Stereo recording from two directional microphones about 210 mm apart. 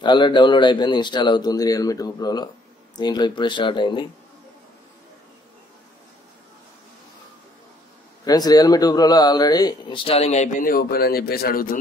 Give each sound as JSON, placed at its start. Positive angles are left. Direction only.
{"t": 0.0, "sound": "speech", "side_deg": 20}
{"t": 8.3, "sound": "speech", "side_deg": 20}